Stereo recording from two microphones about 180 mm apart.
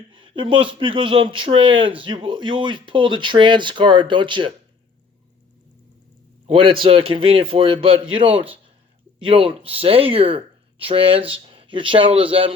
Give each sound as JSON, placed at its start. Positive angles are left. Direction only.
{"t": 0.1, "sound": "speech", "side_deg": -30}
{"t": 6.5, "sound": "speech", "side_deg": -30}